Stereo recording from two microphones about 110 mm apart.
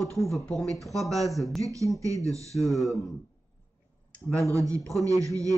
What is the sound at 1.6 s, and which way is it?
Speech, 30° right (ahead or behind).